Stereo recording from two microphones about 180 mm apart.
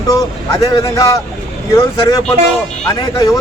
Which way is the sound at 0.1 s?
15° left (ahead or behind).